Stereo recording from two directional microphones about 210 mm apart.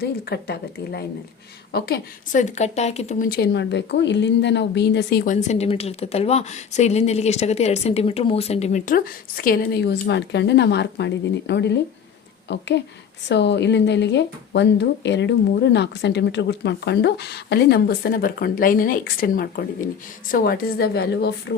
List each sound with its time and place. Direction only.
0.0 s a woman's voice: 50° left (ahead or behind)